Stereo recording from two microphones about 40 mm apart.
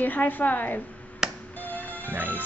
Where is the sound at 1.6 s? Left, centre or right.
Left.